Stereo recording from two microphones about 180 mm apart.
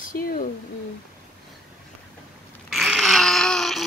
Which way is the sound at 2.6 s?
Centre (ahead or behind).